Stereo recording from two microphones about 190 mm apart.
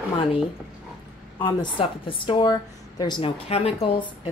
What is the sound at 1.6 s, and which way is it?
A woman's voice, 25° left (ahead or behind).